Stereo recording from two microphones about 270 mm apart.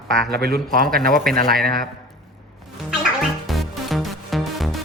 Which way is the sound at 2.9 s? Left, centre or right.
Centre.